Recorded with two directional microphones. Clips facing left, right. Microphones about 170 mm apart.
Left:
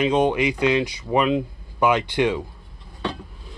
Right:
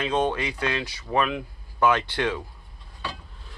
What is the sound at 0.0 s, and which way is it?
Speech, 15° left (ahead or behind).